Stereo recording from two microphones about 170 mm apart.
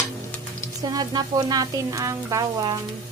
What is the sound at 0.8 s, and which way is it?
Speech, 25° right (ahead or behind).